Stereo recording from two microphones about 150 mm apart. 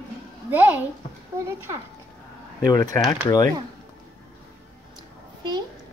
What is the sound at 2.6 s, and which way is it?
Speech, 25° left (ahead or behind).